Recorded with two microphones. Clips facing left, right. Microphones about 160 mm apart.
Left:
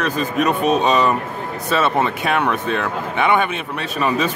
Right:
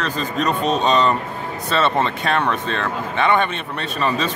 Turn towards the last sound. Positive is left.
turn(degrees=10)  # may be behind; listen again after turning